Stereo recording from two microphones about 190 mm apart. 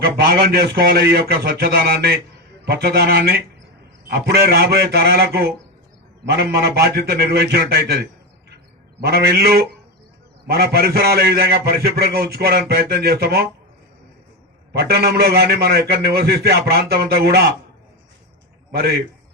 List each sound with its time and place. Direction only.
0.3 s a man's voice: 55° right (ahead or behind)
14.7 s a man's voice: 55° right (ahead or behind)
18.7 s a man's voice: 55° right (ahead or behind)